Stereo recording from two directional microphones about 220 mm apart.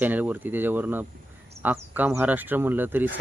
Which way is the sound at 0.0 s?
10° right (ahead or behind).